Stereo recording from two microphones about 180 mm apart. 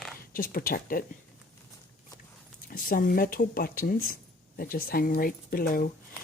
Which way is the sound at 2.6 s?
55° left (ahead or behind).